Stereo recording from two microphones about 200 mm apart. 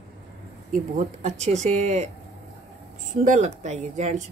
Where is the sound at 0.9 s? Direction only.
35° right (ahead or behind).